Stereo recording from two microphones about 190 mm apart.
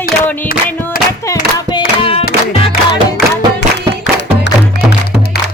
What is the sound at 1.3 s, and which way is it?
Music, 20° left (ahead or behind).